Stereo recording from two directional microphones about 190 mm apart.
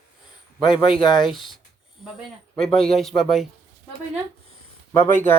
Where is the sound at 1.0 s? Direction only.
25° left (ahead or behind).